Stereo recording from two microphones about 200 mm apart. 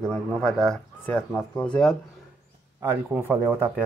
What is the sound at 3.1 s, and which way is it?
Speech, 10° right (ahead or behind).